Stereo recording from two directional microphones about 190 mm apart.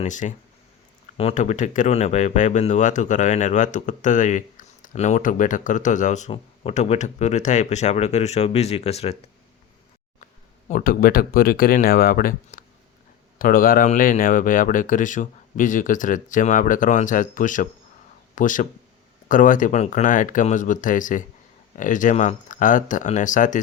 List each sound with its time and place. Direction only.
0.0 s speech: 40° left (ahead or behind)
10.7 s speech: 50° left (ahead or behind)